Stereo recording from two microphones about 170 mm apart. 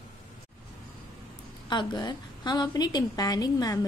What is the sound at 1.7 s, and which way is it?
A woman's voice, 25° left (ahead or behind).